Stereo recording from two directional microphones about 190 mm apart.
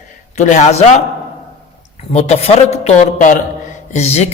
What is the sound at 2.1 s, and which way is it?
Speech, 35° left (ahead or behind).